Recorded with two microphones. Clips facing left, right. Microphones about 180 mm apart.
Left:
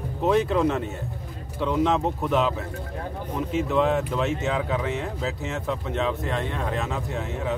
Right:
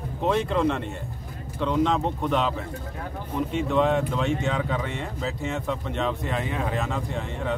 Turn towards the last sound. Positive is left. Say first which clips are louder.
# left 1 dB
turn(degrees=5)  # may be behind; listen again after turning